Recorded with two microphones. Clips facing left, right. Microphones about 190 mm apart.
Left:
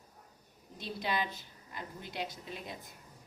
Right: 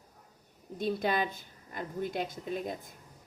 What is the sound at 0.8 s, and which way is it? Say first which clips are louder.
A woman's voice: right 6 dB; 50° right (ahead or behind).